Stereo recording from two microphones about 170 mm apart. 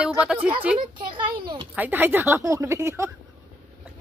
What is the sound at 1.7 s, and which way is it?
Speech, 10° right (ahead or behind).